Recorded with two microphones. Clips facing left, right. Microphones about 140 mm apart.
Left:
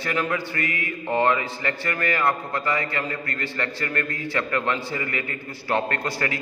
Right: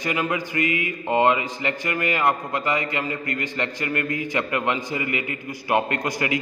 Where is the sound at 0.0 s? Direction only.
15° right (ahead or behind).